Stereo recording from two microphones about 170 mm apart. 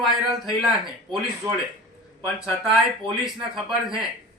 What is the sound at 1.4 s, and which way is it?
Speech, 20° right (ahead or behind).